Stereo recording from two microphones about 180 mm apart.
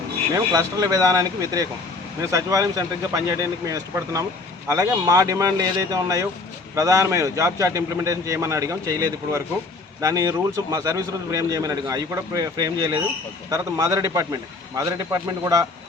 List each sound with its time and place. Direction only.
0.3 s a man's voice: 20° right (ahead or behind)